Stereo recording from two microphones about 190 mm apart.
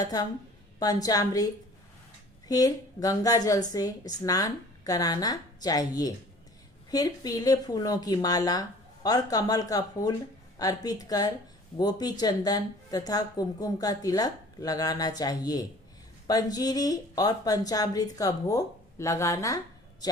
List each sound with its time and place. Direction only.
0.0 s speech: 20° left (ahead or behind)
2.5 s speech: 20° left (ahead or behind)